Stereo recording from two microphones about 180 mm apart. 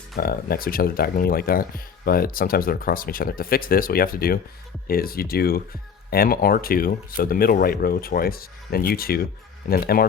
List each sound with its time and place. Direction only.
0.2 s speech: 55° left (ahead or behind)